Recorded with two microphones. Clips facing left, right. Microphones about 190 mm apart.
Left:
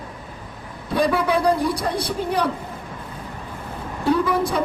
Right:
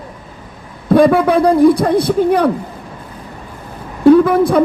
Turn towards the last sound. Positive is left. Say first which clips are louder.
# right 9 dB
turn(degrees=-55)  # may be behind; listen again after turning